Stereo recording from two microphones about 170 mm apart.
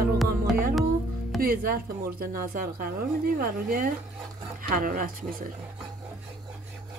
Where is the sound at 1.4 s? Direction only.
60° right (ahead or behind).